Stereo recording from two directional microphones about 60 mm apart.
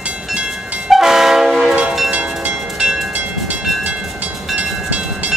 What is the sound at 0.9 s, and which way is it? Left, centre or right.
Train, centre.